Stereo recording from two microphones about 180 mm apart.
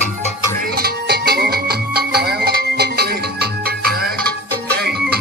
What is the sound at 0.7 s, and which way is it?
Music, 60° right (ahead or behind).